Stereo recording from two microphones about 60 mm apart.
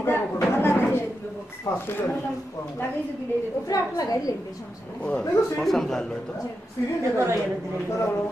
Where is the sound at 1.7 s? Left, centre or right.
Left.